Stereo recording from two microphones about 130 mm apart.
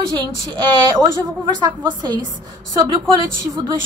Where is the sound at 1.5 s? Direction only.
35° right (ahead or behind).